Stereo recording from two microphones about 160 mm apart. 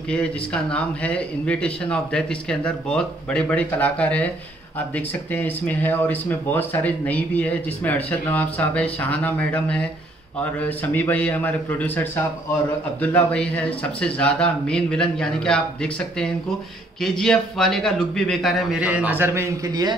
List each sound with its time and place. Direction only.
0.1 s speech: 5° left (ahead or behind); by 20.0 s 25° right (ahead or behind)